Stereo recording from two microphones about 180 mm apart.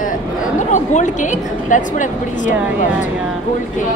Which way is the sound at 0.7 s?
45° left (ahead or behind).